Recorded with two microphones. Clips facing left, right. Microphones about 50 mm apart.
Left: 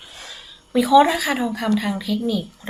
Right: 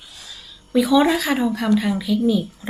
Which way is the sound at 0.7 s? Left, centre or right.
Centre.